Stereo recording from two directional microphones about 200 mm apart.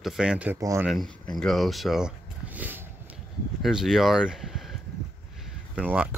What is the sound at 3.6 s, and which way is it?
Speech, centre (ahead or behind).